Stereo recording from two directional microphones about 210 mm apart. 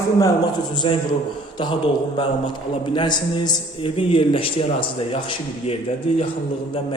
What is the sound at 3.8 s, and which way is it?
A man's voice, 25° left (ahead or behind).